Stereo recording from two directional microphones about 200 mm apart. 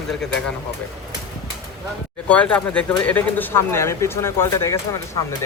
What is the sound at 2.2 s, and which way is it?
Speech, 5° left (ahead or behind).